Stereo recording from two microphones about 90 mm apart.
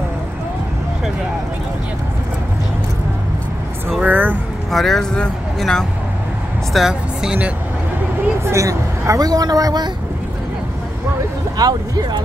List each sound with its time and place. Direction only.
4.0 s vehicle: 20° right (ahead or behind)
4.6 s speech: centre (ahead or behind)
6.7 s speech: 5° right (ahead or behind)
8.5 s speech: 35° right (ahead or behind)
11.5 s speech: 50° right (ahead or behind)